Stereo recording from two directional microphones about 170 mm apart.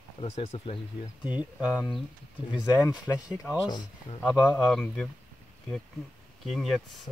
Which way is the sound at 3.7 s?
25° left (ahead or behind).